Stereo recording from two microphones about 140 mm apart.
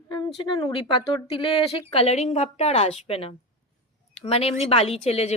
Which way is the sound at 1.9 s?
50° left (ahead or behind).